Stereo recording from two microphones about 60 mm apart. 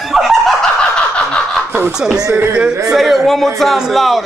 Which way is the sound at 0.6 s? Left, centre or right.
Centre.